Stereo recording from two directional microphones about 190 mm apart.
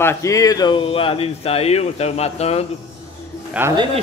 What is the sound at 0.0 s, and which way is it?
Speech, 15° left (ahead or behind).